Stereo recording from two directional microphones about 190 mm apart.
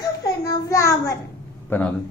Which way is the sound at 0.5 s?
15° left (ahead or behind).